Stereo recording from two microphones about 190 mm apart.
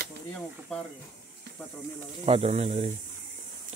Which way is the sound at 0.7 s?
5° left (ahead or behind).